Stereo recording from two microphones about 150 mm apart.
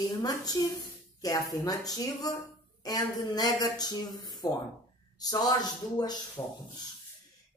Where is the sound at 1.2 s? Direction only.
25° left (ahead or behind).